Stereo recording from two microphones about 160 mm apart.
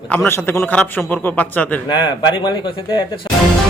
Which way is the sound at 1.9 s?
30° left (ahead or behind).